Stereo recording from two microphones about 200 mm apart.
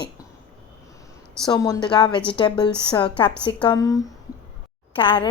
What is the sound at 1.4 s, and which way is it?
A woman's voice, 20° left (ahead or behind).